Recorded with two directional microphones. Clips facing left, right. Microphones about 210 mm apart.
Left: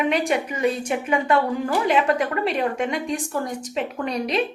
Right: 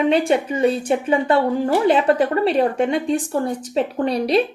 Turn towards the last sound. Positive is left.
turn(degrees=-35)  # may be behind; listen again after turning